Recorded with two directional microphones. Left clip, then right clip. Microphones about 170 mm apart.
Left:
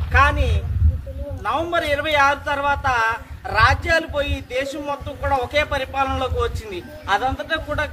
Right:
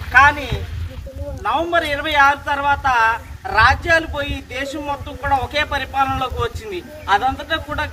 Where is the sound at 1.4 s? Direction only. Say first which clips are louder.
Right 3 dB; 20° left (ahead or behind).